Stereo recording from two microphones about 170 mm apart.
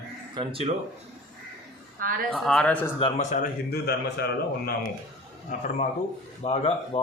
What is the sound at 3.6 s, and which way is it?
Speech, 70° left (ahead or behind).